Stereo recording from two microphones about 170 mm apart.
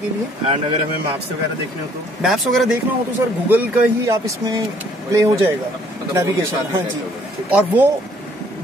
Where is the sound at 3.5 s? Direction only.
15° right (ahead or behind).